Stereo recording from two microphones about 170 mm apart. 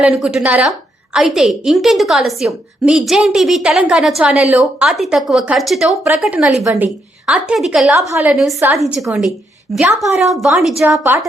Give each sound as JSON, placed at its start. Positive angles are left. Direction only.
{"t": 0.0, "sound": "a woman's voice", "side_deg": -5}
{"t": 7.9, "sound": "a woman's voice", "side_deg": -15}
{"t": 8.3, "sound": "a woman's voice", "side_deg": -5}